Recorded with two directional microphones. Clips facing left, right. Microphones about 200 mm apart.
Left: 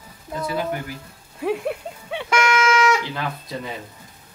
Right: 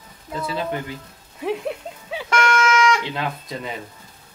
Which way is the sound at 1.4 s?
Centre (ahead or behind).